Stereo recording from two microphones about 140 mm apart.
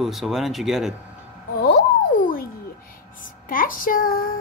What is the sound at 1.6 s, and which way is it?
Music, 85° left.